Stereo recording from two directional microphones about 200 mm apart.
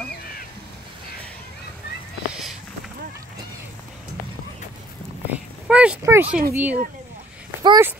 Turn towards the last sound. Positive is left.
turn(degrees=-20)  # may be behind; listen again after turning